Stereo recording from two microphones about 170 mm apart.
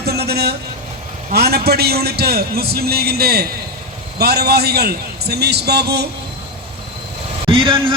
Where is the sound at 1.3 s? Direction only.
70° right (ahead or behind).